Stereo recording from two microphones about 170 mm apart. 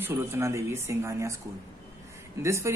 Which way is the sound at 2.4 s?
15° right (ahead or behind).